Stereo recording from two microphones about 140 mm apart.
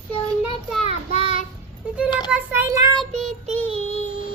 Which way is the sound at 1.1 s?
40° right (ahead or behind).